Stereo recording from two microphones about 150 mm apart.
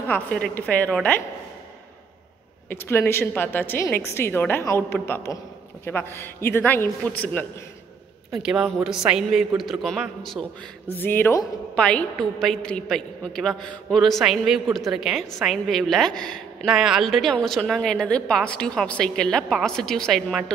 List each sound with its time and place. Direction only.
0.1 s a woman's voice: 10° left (ahead or behind)
2.7 s a woman's voice: 15° left (ahead or behind)
8.3 s a woman's voice: 5° right (ahead or behind)
11.0 s a woman's voice: 15° left (ahead or behind)